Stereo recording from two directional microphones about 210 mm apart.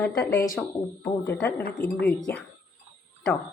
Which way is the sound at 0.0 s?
15° left (ahead or behind).